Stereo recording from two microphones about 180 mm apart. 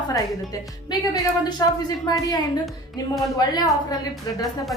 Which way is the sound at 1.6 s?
20° left (ahead or behind).